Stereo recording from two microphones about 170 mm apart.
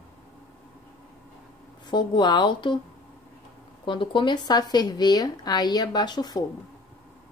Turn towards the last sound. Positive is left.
turn(degrees=25)  # may be behind; listen again after turning